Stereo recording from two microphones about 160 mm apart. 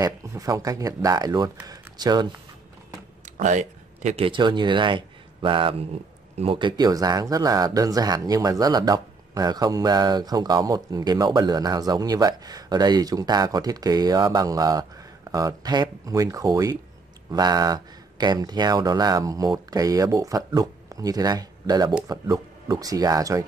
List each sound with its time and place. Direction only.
0.0 s speech: 20° right (ahead or behind)
3.3 s speech: 50° right (ahead or behind); by 23.4 s 20° right (ahead or behind)